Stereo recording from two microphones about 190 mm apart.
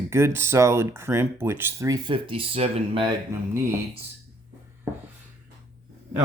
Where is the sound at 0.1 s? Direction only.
15° right (ahead or behind).